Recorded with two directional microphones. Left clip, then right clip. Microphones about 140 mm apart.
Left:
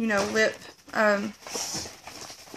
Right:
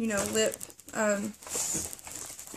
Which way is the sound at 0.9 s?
5° right (ahead or behind).